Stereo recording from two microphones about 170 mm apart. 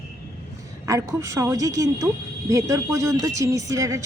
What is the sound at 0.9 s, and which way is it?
A woman's voice, 20° right (ahead or behind).